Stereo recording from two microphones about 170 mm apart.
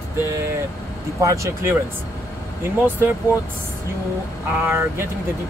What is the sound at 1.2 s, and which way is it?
Speech, 20° right (ahead or behind).